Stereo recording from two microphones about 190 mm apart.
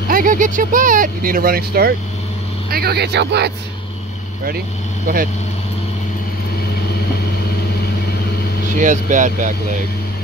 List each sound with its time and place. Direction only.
0.1 s speech: 45° right (ahead or behind); by 3.5 s 65° right (ahead or behind)
5.0 s speech: 50° right (ahead or behind)
8.7 s speech: 40° right (ahead or behind)